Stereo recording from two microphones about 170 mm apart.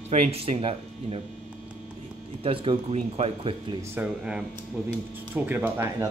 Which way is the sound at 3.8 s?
10° right (ahead or behind).